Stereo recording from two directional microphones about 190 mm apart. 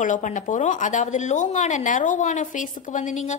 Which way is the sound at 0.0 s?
40° left (ahead or behind).